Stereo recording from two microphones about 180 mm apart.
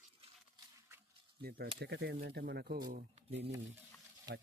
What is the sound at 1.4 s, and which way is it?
Speech, 55° right (ahead or behind).